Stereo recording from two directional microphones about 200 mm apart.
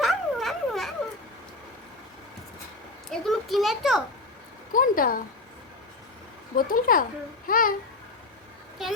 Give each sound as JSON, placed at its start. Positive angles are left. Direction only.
{"t": 0.0, "sound": "a sound", "side_deg": 0}
{"t": 3.1, "sound": "a sound", "side_deg": 0}
{"t": 4.7, "sound": "speech", "side_deg": 45}
{"t": 6.6, "sound": "speech", "side_deg": 45}
{"t": 7.4, "sound": "child singing", "side_deg": 45}
{"t": 8.8, "sound": "a woman's voice", "side_deg": 0}